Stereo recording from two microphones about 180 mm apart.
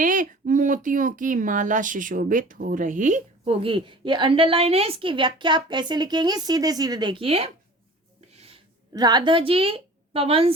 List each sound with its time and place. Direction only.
0.0 s speech: 45° right (ahead or behind)
8.3 s a sound: 35° right (ahead or behind)
8.9 s a woman's voice: 20° right (ahead or behind)